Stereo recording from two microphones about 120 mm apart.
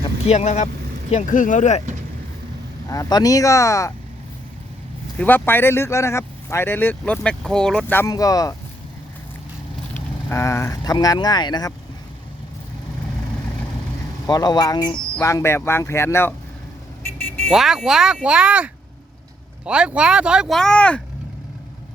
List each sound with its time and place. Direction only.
0.3 s speech: 70° left (ahead or behind)
1.1 s speech: 90° left
2.9 s speech: 30° left (ahead or behind)
5.1 s speech: 15° left (ahead or behind)
8.1 s speech: 30° left (ahead or behind)
9.9 s speech: 20° left (ahead or behind); by 11.7 s 35° left (ahead or behind)
14.3 s speech: 35° left (ahead or behind)
15.2 s speech: 25° left (ahead or behind)
17.1 s vehicle: 15° left (ahead or behind)
17.5 s speech: 5° right (ahead or behind)
20.6 s speech: 10° left (ahead or behind)